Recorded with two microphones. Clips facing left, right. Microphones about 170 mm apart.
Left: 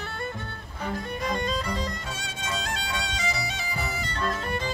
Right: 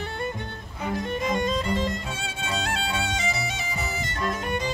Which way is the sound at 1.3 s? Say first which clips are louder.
Right 3 dB; 20° right (ahead or behind).